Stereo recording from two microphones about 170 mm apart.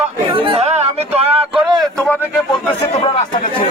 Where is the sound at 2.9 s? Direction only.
40° left (ahead or behind).